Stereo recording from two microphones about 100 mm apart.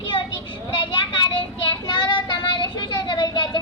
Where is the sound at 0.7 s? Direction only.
55° left (ahead or behind).